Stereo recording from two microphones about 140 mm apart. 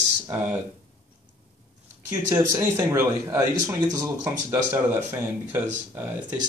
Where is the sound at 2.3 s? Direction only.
15° right (ahead or behind).